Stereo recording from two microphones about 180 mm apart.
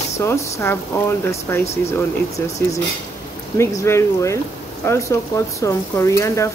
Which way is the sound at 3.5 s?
15° left (ahead or behind).